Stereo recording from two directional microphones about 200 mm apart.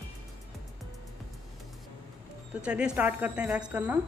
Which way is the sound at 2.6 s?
5° right (ahead or behind).